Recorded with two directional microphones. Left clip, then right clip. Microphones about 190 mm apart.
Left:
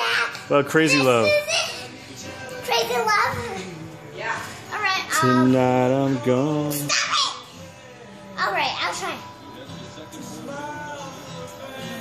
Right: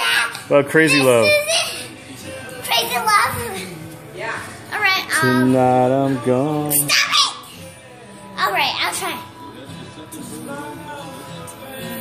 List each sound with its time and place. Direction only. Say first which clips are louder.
0.0 s a child's voice: right 4 dB; 5° left (ahead or behind)
2.7 s a sound: right 4 dB; 5° left (ahead or behind)
4.6 s child singing: right 6 dB; centre (ahead or behind)
5.5 s music: right 4 dB; 15° left (ahead or behind)
6.7 s a sound: right 6 dB; centre (ahead or behind)
8.4 s music: right 4 dB; centre (ahead or behind)